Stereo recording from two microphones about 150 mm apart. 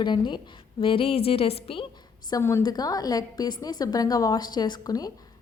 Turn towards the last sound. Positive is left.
turn(degrees=25)  # may be behind; listen again after turning